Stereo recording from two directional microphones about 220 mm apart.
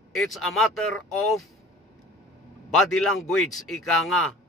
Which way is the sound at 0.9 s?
75° left (ahead or behind).